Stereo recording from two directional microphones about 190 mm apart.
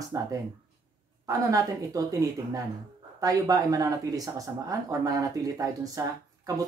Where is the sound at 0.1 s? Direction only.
20° right (ahead or behind).